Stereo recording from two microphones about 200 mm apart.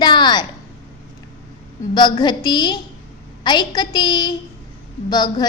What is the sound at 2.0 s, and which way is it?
A woman's voice, 20° left (ahead or behind).